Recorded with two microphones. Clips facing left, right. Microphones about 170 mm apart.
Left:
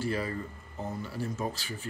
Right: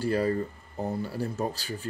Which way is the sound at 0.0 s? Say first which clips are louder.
Right 6 dB; 40° right (ahead or behind).